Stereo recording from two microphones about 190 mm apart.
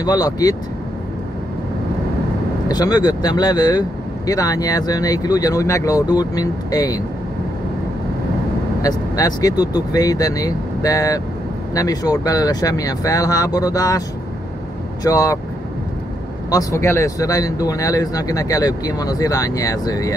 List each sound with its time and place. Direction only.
0.0 s speech: 20° left (ahead or behind)
2.7 s speech: 20° left (ahead or behind)
8.8 s speech: 20° left (ahead or behind)
15.0 s speech: 20° left (ahead or behind)
16.4 s speech: 15° left (ahead or behind)